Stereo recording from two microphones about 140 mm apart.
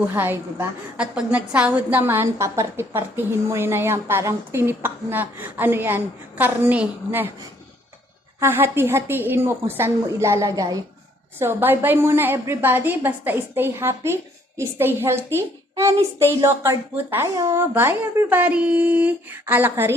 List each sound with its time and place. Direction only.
0.1 s a woman's voice: 15° right (ahead or behind)
8.4 s a woman's voice: 15° right (ahead or behind)